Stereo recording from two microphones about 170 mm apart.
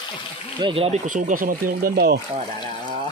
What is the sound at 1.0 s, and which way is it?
Speech, 50° right (ahead or behind).